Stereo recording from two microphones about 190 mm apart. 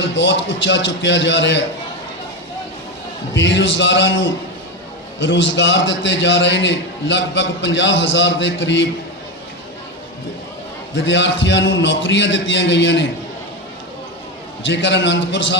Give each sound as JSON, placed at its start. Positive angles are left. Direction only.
{"t": 0.0, "sound": "a man's voice", "side_deg": 70}
{"t": 3.3, "sound": "a man's voice", "side_deg": 70}
{"t": 10.9, "sound": "a man's voice", "side_deg": 70}
{"t": 14.6, "sound": "a man's voice", "side_deg": 70}